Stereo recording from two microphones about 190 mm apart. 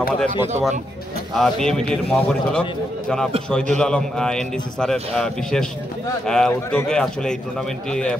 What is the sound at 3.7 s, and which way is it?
A man's voice, 5° left (ahead or behind).